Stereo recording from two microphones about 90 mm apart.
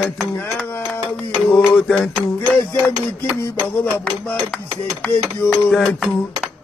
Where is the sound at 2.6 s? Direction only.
30° left (ahead or behind).